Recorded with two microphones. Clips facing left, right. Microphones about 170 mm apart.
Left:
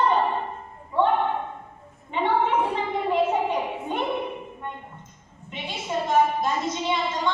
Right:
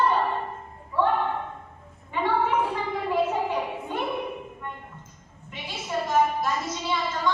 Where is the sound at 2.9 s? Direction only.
25° left (ahead or behind).